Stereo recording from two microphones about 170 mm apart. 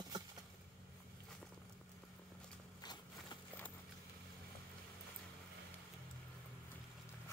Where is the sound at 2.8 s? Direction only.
25° left (ahead or behind).